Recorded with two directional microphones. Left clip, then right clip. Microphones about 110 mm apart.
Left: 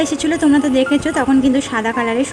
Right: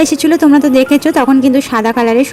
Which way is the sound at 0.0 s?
40° right (ahead or behind).